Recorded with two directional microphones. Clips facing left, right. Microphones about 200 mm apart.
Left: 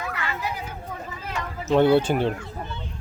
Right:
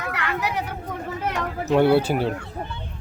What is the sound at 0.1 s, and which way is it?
Chatter, 70° right (ahead or behind).